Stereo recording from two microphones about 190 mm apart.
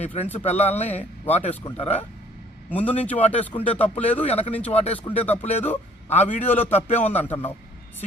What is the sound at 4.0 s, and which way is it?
Speech, 10° left (ahead or behind).